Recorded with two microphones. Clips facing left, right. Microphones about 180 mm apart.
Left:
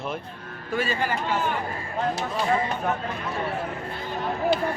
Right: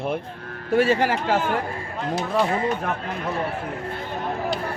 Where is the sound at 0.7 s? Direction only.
70° right (ahead or behind); by 1.4 s 90° right.